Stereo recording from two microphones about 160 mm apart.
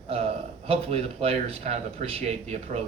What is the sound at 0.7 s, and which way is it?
Speech, 40° right (ahead or behind).